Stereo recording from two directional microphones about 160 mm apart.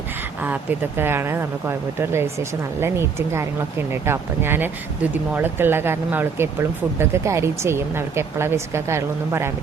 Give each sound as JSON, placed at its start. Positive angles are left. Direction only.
{"t": 0.4, "sound": "speech", "side_deg": -10}